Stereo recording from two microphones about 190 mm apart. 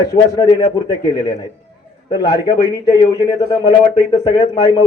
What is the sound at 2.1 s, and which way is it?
A man's voice, 20° left (ahead or behind).